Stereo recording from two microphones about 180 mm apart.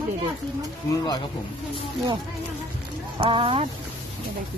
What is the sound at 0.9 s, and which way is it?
Speech, 25° left (ahead or behind).